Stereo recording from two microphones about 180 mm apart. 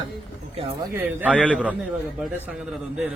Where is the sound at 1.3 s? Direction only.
5° left (ahead or behind).